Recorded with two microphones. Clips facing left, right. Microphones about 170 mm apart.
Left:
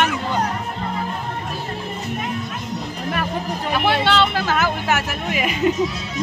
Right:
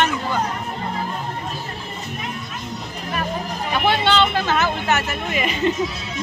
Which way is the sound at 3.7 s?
5° left (ahead or behind).